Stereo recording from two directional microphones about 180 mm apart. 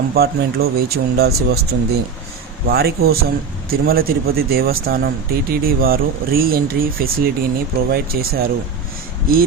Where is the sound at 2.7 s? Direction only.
60° right (ahead or behind).